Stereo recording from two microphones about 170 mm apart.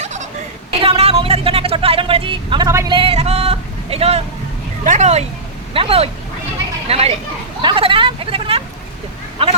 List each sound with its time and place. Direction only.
0.0 s a sound: 45° right (ahead or behind)
0.7 s vehicle: 35° right (ahead or behind)
4.9 s speech: 40° right (ahead or behind)
7.6 s vehicle: 30° right (ahead or behind)